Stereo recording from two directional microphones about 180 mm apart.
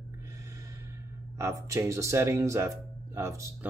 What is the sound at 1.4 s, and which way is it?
Speech, 15° right (ahead or behind).